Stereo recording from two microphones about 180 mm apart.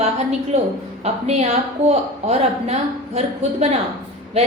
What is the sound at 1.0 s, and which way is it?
A woman's voice, 35° right (ahead or behind).